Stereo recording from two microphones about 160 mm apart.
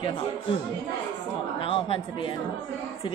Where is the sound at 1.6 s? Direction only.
35° left (ahead or behind).